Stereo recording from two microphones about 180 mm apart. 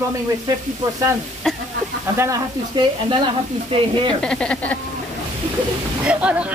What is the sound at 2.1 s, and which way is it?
Speech, 15° right (ahead or behind).